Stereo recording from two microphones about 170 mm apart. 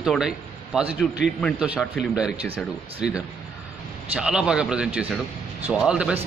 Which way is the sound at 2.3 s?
35° right (ahead or behind).